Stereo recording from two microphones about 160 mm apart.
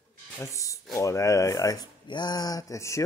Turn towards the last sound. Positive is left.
turn(degrees=20)  # may be behind; listen again after turning